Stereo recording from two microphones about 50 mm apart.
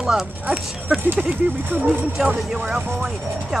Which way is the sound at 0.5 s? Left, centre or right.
Right.